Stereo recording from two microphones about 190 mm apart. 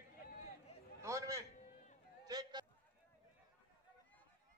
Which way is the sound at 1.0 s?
15° right (ahead or behind).